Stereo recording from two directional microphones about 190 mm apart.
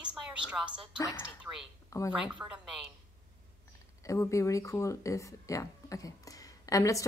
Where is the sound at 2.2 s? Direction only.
5° right (ahead or behind).